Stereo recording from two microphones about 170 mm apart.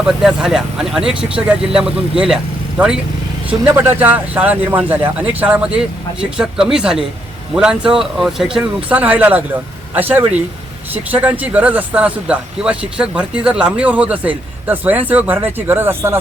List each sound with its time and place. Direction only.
0.2 s speech: 5° right (ahead or behind)